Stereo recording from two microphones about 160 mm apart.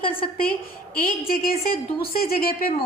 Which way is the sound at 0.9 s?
65° left (ahead or behind).